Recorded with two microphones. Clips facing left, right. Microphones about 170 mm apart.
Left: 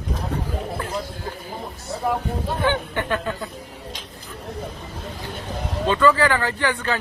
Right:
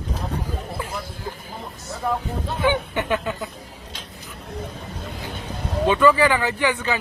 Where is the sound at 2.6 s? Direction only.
15° right (ahead or behind).